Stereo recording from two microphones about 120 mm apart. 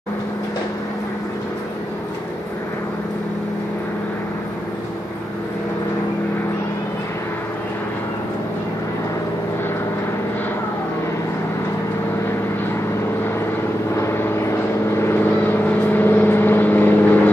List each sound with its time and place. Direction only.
13.9 s vehicle: 25° left (ahead or behind)